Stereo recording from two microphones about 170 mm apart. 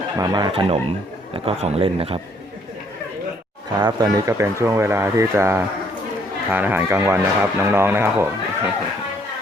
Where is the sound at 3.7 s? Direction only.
25° right (ahead or behind).